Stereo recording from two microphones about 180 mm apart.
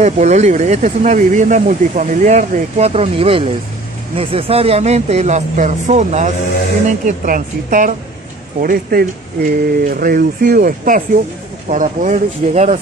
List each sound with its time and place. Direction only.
0.0 s speech: 40° right (ahead or behind)